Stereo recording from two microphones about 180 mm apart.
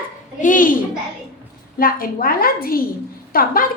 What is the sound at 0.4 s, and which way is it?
Babbling, 50° left (ahead or behind).